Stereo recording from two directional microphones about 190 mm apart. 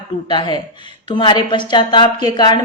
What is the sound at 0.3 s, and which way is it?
A woman's voice, 25° left (ahead or behind).